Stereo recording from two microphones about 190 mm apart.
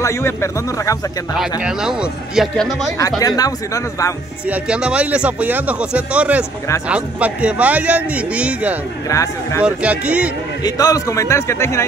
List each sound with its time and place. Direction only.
0.0 s a man's voice: 15° left (ahead or behind)
1.4 s speech: 5° right (ahead or behind)
3.2 s speech: 20° left (ahead or behind)
4.5 s speech: 5° right (ahead or behind)
9.1 s a man's voice: 15° left (ahead or behind)
9.6 s speech: 5° right (ahead or behind)
10.6 s a man's voice: 20° left (ahead or behind)